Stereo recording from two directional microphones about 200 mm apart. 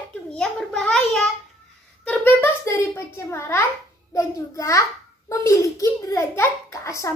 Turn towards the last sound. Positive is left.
turn(degrees=15)  # may be behind; listen again after turning